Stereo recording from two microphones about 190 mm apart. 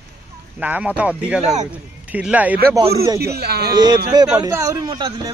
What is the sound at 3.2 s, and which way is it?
Speech, 55° right (ahead or behind).